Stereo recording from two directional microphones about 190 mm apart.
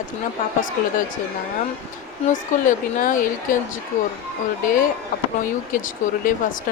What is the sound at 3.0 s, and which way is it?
Speech, 45° left (ahead or behind).